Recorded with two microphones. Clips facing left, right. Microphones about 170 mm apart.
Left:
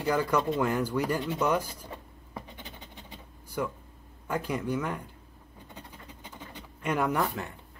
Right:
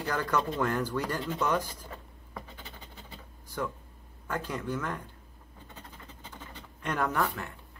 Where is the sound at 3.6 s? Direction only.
10° left (ahead or behind).